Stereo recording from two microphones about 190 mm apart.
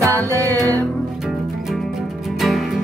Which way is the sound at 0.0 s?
15° right (ahead or behind).